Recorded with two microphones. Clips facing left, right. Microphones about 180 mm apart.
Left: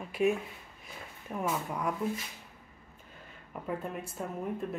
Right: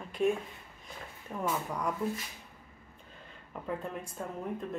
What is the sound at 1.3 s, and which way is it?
Speech, 5° left (ahead or behind).